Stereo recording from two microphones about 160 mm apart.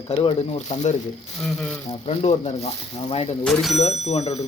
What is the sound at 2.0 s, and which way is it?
Speech, 40° left (ahead or behind).